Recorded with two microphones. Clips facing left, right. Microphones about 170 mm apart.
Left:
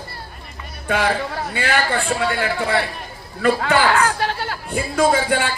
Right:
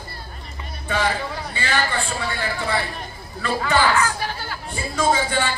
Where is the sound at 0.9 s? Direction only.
60° left (ahead or behind).